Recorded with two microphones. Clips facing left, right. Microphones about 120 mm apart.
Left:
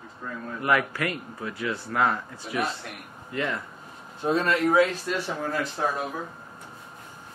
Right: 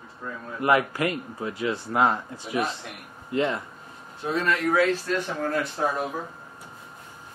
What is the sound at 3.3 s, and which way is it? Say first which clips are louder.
Speech: right 5 dB; 20° right (ahead or behind).